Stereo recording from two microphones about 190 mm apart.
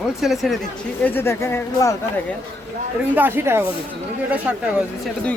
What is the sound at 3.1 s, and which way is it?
Speech, 10° right (ahead or behind).